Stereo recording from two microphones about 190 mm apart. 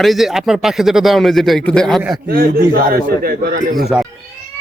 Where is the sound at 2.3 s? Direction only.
55° right (ahead or behind).